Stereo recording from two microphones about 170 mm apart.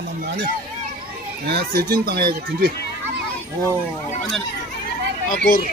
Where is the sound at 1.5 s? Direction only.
65° right (ahead or behind).